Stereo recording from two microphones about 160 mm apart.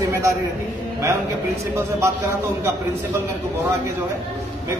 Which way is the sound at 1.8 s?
15° right (ahead or behind).